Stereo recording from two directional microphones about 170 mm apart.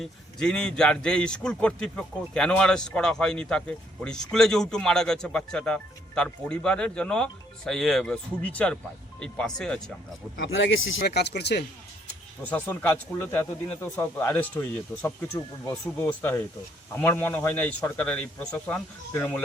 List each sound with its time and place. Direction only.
0.0 s a man's voice: 5° left (ahead or behind)
10.3 s speech: 80° left
12.5 s a man's voice: 10° left (ahead or behind)
16.0 s a man's voice: 10° left (ahead or behind)